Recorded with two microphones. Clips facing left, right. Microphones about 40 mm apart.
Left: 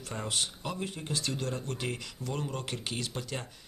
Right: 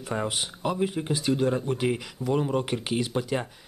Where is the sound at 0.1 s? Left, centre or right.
Centre.